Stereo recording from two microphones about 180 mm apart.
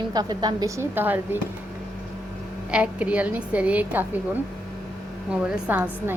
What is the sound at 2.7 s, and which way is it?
A woman's voice, 5° right (ahead or behind).